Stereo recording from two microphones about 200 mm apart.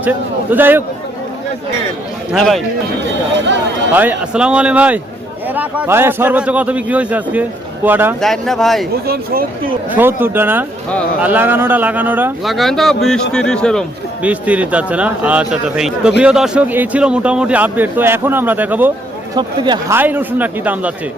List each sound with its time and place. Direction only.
0.0 s a man's voice: 10° right (ahead or behind)
2.3 s speech: centre (ahead or behind)
3.9 s a man's voice: 10° right (ahead or behind)
8.2 s speech: centre (ahead or behind)
9.0 s speech: 50° right (ahead or behind)
9.9 s a man's voice: 10° right (ahead or behind)
14.2 s a man's voice: 5° right (ahead or behind)
19.4 s speech: 20° right (ahead or behind)
20.0 s a man's voice: 10° right (ahead or behind)